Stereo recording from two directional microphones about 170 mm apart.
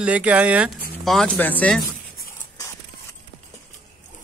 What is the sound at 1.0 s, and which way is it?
Speech, 5° left (ahead or behind).